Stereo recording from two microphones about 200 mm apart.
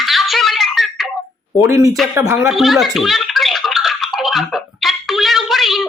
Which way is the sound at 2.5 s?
Centre (ahead or behind).